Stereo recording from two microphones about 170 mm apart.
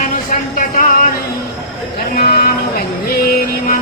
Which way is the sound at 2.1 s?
60° left (ahead or behind).